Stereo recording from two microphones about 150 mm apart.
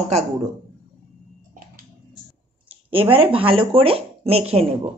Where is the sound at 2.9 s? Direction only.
35° right (ahead or behind).